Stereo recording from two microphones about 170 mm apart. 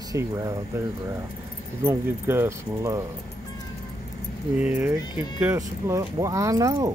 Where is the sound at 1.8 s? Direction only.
15° right (ahead or behind).